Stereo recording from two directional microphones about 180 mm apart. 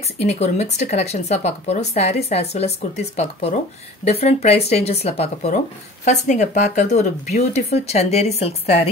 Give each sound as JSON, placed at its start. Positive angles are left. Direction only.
{"t": 0.2, "sound": "speech", "side_deg": 35}